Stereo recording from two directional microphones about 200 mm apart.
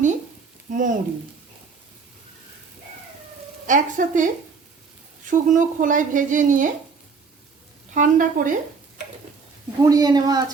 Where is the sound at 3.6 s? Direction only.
40° right (ahead or behind).